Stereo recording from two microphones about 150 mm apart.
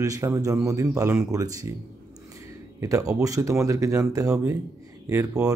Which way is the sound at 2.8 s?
20° right (ahead or behind).